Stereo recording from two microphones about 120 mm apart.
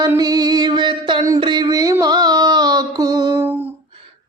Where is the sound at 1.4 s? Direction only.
40° right (ahead or behind).